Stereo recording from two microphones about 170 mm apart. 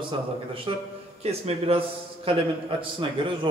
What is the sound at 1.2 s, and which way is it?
A man's voice, 40° right (ahead or behind).